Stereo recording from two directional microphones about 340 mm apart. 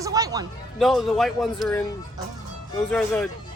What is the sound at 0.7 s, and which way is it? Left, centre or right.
Speech, centre.